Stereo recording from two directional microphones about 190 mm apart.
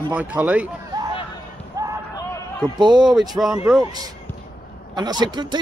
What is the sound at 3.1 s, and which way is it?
Speech, centre (ahead or behind).